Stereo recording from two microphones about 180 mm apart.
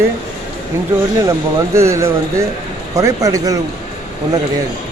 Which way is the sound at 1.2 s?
15° right (ahead or behind).